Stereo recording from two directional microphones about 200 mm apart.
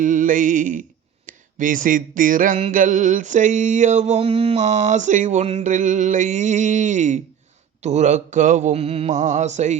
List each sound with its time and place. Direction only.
0.0 s mantra: 40° right (ahead or behind)
1.3 s a sound: 40° right (ahead or behind)
2.6 s mantra: 40° right (ahead or behind)